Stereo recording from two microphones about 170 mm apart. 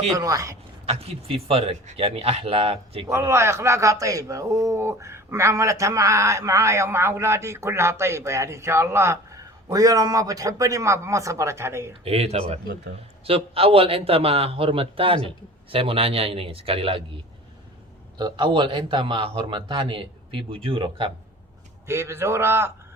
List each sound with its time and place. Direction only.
0.1 s a man's voice: 20° right (ahead or behind)
0.9 s a man's voice: 35° right (ahead or behind)
3.1 s a man's voice: 15° right (ahead or behind)
12.0 s a man's voice: 35° right (ahead or behind)
18.2 s a man's voice: 25° right (ahead or behind)
21.8 s a man's voice: 15° right (ahead or behind)